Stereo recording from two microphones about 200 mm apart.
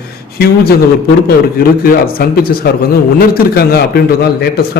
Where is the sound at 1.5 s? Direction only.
50° left (ahead or behind).